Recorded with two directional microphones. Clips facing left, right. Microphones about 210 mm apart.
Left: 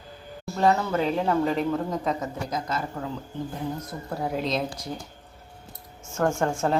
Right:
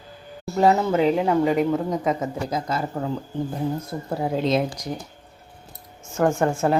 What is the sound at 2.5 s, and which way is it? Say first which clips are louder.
Speech: right 3 dB; 30° right (ahead or behind).